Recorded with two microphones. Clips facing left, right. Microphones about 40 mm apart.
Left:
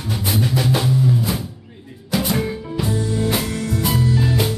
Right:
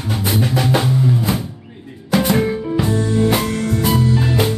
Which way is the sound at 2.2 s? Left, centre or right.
Centre.